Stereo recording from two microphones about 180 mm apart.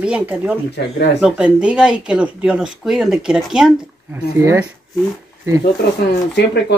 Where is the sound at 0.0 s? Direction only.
5° right (ahead or behind).